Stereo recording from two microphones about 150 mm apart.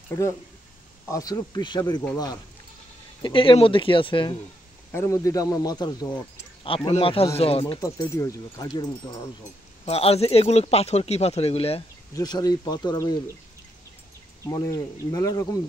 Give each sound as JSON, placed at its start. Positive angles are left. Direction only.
{"t": 1.0, "sound": "speech", "side_deg": 25}
{"t": 4.9, "sound": "speech", "side_deg": 20}
{"t": 7.8, "sound": "speech", "side_deg": 20}
{"t": 9.8, "sound": "speech", "side_deg": 45}
{"t": 12.1, "sound": "speech", "side_deg": 25}
{"t": 14.4, "sound": "speech", "side_deg": 20}